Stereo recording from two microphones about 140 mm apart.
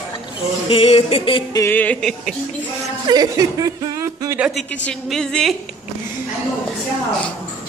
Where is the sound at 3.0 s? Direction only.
25° right (ahead or behind).